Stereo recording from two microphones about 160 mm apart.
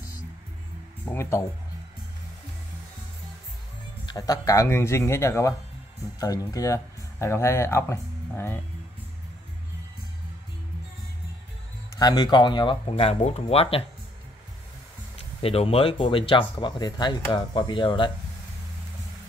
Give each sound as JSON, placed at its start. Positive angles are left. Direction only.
{"t": 1.0, "sound": "speech", "side_deg": 15}
{"t": 4.0, "sound": "speech", "side_deg": 25}
{"t": 12.0, "sound": "speech", "side_deg": 25}
{"t": 15.4, "sound": "speech", "side_deg": 40}